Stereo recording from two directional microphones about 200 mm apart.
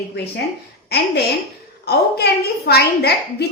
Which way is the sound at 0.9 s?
55° left (ahead or behind).